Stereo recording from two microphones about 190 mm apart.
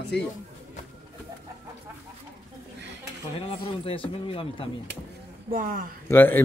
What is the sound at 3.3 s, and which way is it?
Speech, 30° left (ahead or behind).